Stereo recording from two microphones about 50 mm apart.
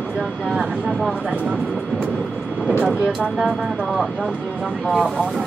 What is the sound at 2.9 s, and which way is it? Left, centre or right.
Speech, centre.